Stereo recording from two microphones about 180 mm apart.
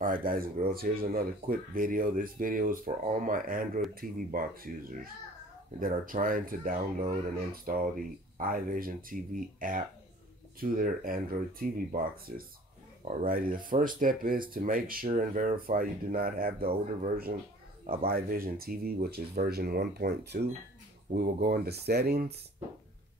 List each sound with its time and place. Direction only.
0.0 s speech: 50° right (ahead or behind)